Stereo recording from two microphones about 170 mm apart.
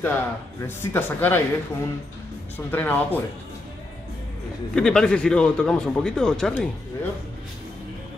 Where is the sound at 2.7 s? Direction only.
10° left (ahead or behind).